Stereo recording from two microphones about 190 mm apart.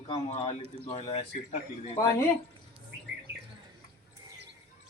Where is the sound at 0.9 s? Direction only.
35° left (ahead or behind).